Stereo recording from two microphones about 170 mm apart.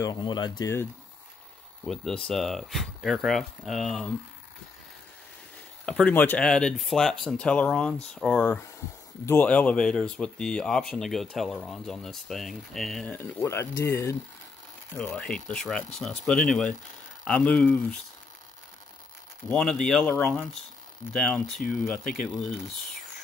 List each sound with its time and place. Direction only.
0.0 s speech: 25° left (ahead or behind)
1.9 s speech: 5° left (ahead or behind)
5.9 s speech: 5° left (ahead or behind)
19.5 s speech: 5° left (ahead or behind)
21.5 s speech: 55° left (ahead or behind)